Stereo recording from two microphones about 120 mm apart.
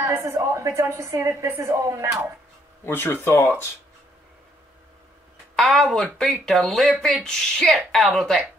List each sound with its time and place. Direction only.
0.0 s a woman's voice: 25° right (ahead or behind)
2.8 s speech: 15° left (ahead or behind)
5.6 s speech: centre (ahead or behind)